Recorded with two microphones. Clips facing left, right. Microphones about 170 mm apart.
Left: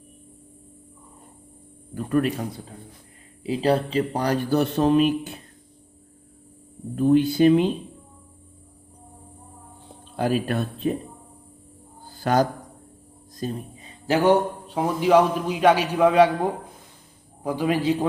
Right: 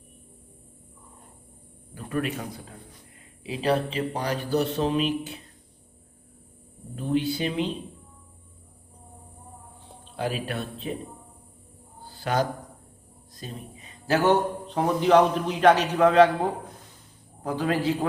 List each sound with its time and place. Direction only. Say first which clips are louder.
2.0 s a man's voice: left 6 dB; 40° left (ahead or behind)
6.9 s speech: left 7 dB; 50° left (ahead or behind)
10.2 s speech: left 6 dB; 45° left (ahead or behind)
12.2 s a man's voice: left 5 dB; 45° left (ahead or behind)
14.1 s a man's voice: left 3 dB; 15° left (ahead or behind)
17.4 s a man's voice: left 3 dB; 10° left (ahead or behind)